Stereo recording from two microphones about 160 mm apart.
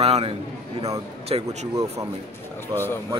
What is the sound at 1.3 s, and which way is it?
Speech, 35° right (ahead or behind).